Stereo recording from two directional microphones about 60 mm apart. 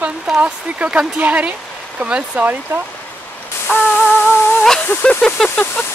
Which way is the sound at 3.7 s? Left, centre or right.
Left.